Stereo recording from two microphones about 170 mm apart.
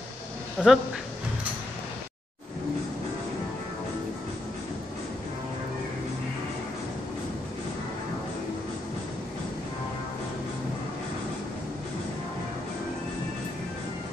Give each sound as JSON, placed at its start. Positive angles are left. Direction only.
{"t": 0.6, "sound": "speech", "side_deg": 5}